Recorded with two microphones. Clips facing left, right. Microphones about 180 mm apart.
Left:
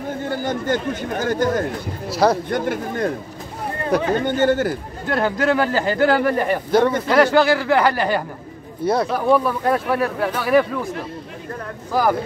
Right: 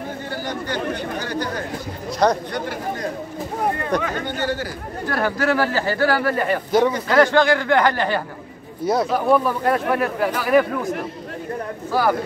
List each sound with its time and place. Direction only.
0.2 s speech: 50° left (ahead or behind)
2.0 s speech: 5° left (ahead or behind)
2.5 s speech: 50° left (ahead or behind)
3.9 s speech: 5° left (ahead or behind)
4.4 s speech: 50° left (ahead or behind)
5.0 s speech: 20° left (ahead or behind)
8.8 s speech: centre (ahead or behind)
11.9 s speech: 15° left (ahead or behind)